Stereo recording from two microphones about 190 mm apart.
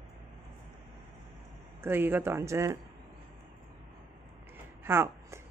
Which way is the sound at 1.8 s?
10° right (ahead or behind).